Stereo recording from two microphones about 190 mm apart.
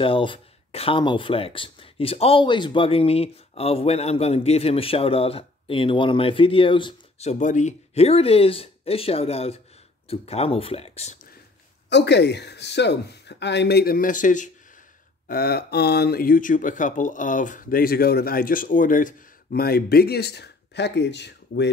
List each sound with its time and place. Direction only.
0.0 s speech: 25° left (ahead or behind)
11.9 s speech: 65° left (ahead or behind); by 14.5 s 40° left (ahead or behind)
15.2 s speech: 55° left (ahead or behind)